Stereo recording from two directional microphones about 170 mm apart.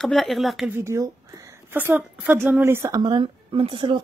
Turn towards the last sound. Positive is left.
turn(degrees=-30)  # may be behind; listen again after turning